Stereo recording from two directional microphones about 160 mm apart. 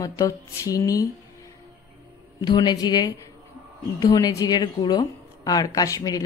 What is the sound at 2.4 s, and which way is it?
A woman's voice, 30° left (ahead or behind).